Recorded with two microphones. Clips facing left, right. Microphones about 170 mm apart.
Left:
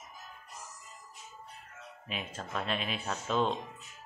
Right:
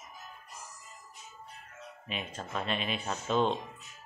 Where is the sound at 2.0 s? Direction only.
5° left (ahead or behind).